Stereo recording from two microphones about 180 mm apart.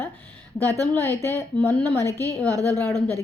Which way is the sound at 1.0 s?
15° left (ahead or behind).